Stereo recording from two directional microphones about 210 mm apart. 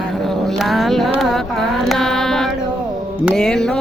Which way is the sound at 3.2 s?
5° left (ahead or behind).